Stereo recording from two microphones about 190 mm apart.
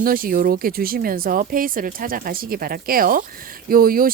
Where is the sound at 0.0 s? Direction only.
50° right (ahead or behind).